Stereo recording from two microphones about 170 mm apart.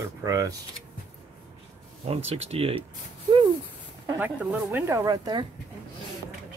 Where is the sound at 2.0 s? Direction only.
35° right (ahead or behind).